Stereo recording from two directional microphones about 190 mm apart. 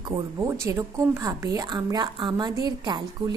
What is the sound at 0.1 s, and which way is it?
A woman's voice, 20° right (ahead or behind).